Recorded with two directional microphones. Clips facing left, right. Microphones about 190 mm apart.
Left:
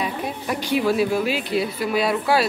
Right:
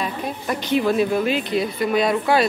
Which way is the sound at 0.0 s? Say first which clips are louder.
Even; 10° left (ahead or behind).